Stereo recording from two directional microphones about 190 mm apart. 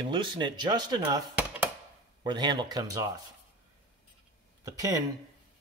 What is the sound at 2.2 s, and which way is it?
Speech, 25° right (ahead or behind).